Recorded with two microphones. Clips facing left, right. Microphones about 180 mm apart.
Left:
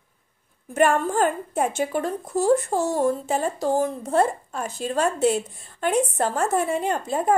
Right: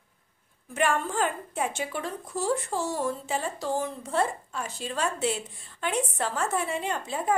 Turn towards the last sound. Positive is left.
turn(degrees=45)  # may be behind; listen again after turning